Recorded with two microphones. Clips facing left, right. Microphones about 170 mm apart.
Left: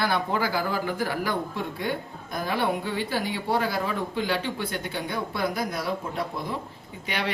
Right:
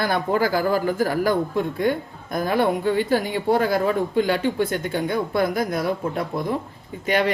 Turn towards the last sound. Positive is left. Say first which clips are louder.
# right 9 dB
turn(degrees=-45)  # may be behind; listen again after turning